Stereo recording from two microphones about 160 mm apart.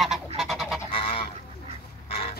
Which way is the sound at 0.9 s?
35° left (ahead or behind).